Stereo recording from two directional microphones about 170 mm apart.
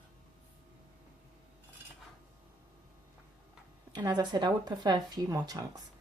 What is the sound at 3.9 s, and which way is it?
Speech, 25° right (ahead or behind).